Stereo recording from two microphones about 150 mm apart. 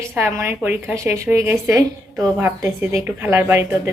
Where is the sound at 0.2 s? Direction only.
15° right (ahead or behind).